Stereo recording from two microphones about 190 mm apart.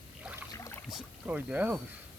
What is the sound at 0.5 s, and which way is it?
Boat, 15° left (ahead or behind).